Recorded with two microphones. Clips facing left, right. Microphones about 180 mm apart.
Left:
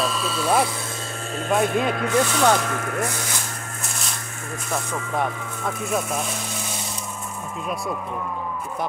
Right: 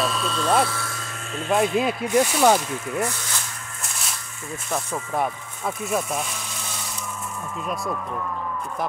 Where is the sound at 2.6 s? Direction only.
70° left (ahead or behind).